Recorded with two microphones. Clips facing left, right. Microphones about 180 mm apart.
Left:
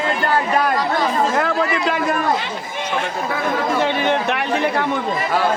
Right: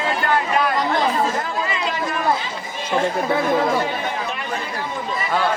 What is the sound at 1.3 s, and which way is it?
Chatter, 65° left (ahead or behind).